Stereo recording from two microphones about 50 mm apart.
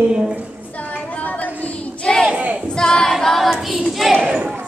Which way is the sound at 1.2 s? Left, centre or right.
Left.